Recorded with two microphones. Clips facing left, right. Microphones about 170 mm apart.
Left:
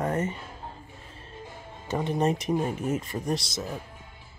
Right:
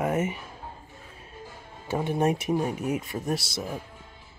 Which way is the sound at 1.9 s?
10° right (ahead or behind).